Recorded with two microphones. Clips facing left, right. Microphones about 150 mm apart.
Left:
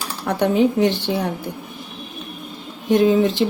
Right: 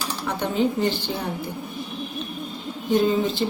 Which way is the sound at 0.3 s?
65° left (ahead or behind).